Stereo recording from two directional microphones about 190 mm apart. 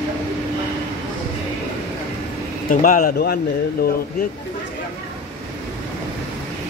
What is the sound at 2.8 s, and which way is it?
Speech, 45° left (ahead or behind).